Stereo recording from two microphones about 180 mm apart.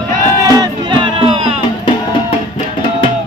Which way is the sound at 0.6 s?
25° right (ahead or behind).